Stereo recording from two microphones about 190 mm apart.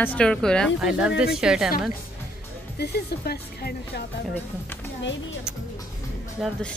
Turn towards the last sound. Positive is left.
turn(degrees=0)  # may be behind; listen again after turning